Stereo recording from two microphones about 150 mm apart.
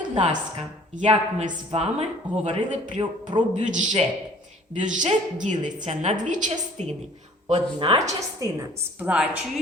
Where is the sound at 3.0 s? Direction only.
30° right (ahead or behind).